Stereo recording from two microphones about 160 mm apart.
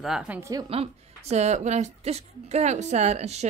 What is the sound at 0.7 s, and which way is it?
A woman's voice, 40° right (ahead or behind).